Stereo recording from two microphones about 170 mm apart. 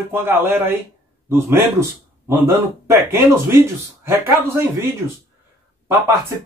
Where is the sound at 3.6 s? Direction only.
15° right (ahead or behind).